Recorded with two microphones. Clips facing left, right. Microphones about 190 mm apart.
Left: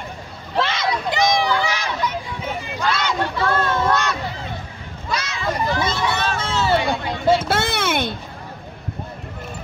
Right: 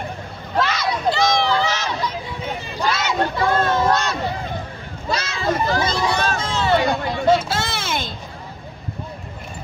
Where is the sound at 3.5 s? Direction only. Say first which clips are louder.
Right 2 dB; 25° right (ahead or behind).